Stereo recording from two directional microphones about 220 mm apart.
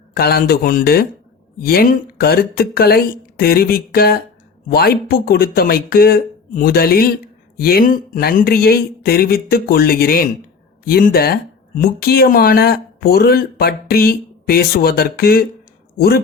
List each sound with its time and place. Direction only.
0.1 s speech: 45° left (ahead or behind)